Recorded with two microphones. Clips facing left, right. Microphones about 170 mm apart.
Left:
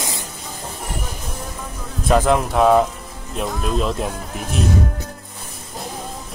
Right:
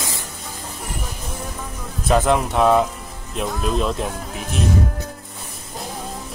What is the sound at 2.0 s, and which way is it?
Speech, centre (ahead or behind).